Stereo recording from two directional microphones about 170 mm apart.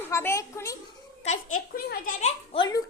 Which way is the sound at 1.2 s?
55° left (ahead or behind).